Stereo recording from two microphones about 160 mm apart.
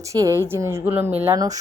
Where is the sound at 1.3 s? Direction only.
25° right (ahead or behind).